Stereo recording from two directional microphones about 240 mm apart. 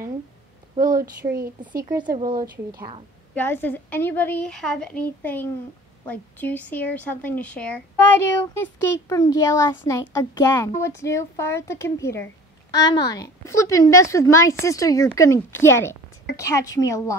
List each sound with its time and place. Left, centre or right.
0.7 s speech: right
2.0 s speech: right
3.3 s a child's voice: centre